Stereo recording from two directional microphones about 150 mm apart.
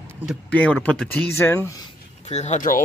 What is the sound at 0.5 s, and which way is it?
Speech, 10° left (ahead or behind).